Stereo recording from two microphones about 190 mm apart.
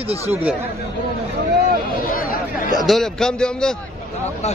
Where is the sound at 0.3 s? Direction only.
10° right (ahead or behind).